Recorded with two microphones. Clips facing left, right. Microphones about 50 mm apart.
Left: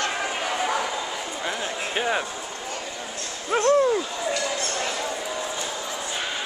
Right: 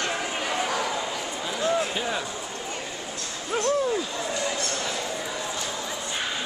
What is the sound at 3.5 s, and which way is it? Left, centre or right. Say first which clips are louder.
Speech: left 5 dB; left.